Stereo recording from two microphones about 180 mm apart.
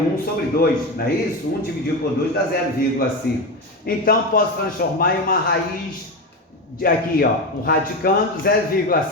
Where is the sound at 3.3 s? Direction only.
55° left (ahead or behind).